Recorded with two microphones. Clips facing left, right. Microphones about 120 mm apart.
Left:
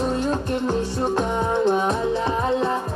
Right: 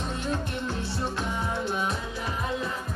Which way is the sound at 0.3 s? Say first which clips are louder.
Left 8 dB; 45° left (ahead or behind).